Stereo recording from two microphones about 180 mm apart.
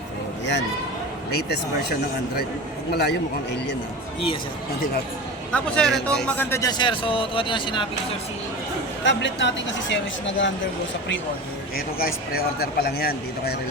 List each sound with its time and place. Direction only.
1.9 s speech: 60° left (ahead or behind)
5.5 s speech: 5° left (ahead or behind); by 7.9 s 25° left (ahead or behind)
9.0 s a woman's voice: 85° left
11.9 s speech: 55° left (ahead or behind)